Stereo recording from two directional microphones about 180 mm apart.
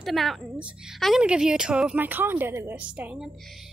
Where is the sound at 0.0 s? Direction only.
Centre (ahead or behind).